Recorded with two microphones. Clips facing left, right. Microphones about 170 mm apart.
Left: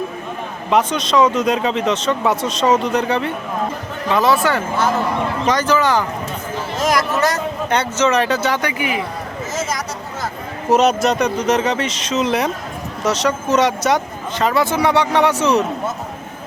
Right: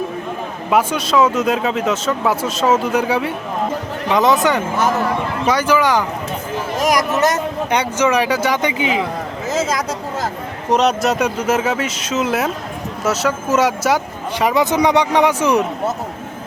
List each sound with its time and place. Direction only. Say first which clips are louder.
0.7 s speech: even; 5° right (ahead or behind)
4.1 s speech: right 1 dB; 20° right (ahead or behind)
10.7 s speech: left 1 dB; centre (ahead or behind)